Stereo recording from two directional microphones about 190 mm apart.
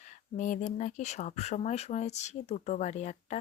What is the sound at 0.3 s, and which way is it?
Speech, 40° left (ahead or behind).